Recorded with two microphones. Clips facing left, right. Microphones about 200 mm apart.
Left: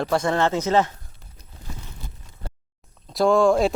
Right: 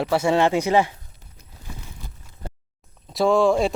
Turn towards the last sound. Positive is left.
turn(degrees=0)  # may be behind; listen again after turning